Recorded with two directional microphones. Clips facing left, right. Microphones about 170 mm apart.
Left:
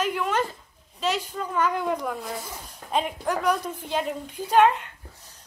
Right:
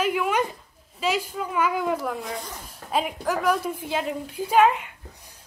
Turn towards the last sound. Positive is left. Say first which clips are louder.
# right 2 dB
turn(degrees=-10)  # may be behind; listen again after turning